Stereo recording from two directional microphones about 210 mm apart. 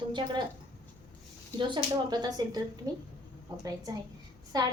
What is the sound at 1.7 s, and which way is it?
A woman's voice, 20° right (ahead or behind).